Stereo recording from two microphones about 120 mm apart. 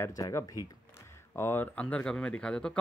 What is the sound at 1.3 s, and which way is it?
Speech, 20° left (ahead or behind).